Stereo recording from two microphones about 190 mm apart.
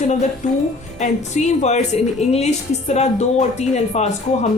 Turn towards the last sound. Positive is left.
turn(degrees=35)  # may be behind; listen again after turning